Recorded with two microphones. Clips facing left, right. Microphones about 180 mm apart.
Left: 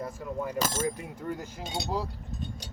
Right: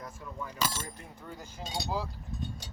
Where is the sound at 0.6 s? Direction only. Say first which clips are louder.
Left 2 dB; 45° left (ahead or behind).